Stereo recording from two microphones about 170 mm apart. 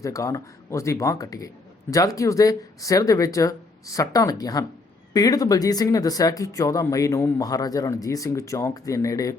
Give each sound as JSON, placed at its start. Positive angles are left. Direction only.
{"t": 0.0, "sound": "speech", "side_deg": 20}